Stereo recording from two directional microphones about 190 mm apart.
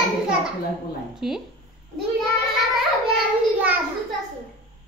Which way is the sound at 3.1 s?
5° right (ahead or behind).